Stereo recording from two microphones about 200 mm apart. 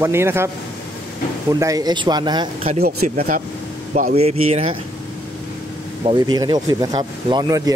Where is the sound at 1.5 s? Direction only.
20° right (ahead or behind).